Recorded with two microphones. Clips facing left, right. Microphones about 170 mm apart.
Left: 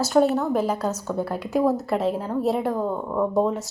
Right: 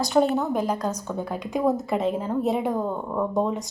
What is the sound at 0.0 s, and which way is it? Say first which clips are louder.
Speech: left 2 dB; 5° left (ahead or behind).